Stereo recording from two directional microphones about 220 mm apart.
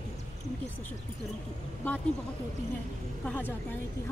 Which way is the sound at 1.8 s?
5° left (ahead or behind).